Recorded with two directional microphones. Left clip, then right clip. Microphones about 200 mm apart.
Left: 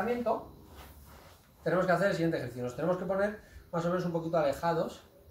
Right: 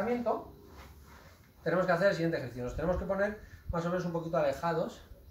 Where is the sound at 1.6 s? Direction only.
5° left (ahead or behind).